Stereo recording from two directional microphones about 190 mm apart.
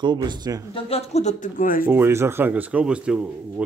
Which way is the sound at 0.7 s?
30° left (ahead or behind).